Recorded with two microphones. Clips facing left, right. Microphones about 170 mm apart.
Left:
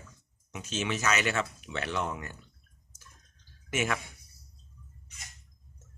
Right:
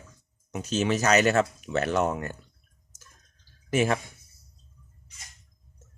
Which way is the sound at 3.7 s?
35° right (ahead or behind).